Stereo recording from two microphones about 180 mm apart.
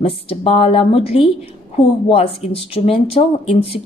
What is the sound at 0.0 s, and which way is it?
A woman's voice, 30° left (ahead or behind).